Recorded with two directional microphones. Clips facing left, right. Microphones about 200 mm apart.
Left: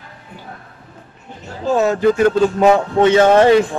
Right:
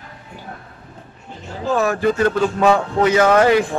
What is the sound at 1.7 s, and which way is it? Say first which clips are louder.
A man's voice: left 4 dB; 20° left (ahead or behind).